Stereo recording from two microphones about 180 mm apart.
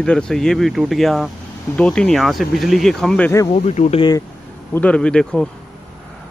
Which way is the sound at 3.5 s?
35° left (ahead or behind).